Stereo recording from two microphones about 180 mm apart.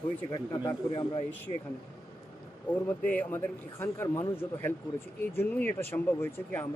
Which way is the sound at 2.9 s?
10° left (ahead or behind).